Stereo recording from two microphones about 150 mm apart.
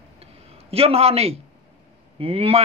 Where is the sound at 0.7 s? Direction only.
40° right (ahead or behind).